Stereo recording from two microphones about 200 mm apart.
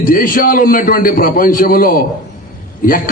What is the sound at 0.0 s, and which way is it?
A man's voice, 45° left (ahead or behind).